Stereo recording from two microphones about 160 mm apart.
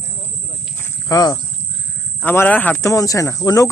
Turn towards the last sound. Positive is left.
turn(degrees=20)  # may be behind; listen again after turning